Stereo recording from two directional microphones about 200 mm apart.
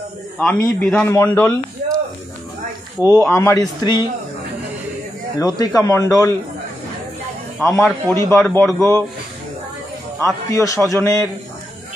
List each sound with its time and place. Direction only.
0.4 s a man's voice: 5° left (ahead or behind)
3.0 s a man's voice: 15° left (ahead or behind)
5.4 s a man's voice: 15° left (ahead or behind)
7.6 s a man's voice: 10° left (ahead or behind)
10.2 s a man's voice: 15° left (ahead or behind)